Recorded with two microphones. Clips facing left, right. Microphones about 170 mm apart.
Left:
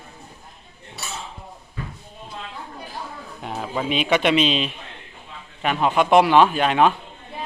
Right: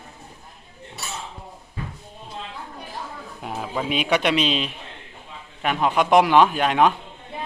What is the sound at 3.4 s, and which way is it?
A man's voice, centre (ahead or behind).